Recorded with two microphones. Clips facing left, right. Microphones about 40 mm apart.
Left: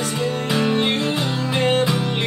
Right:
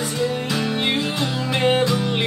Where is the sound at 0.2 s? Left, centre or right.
Centre.